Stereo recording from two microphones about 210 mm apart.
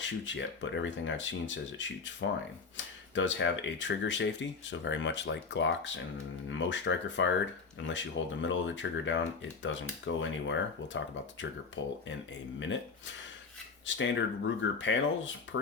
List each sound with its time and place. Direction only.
0.0 s speech: 60° left (ahead or behind)
12.5 s speech: 60° left (ahead or behind)
13.8 s speech: 60° left (ahead or behind)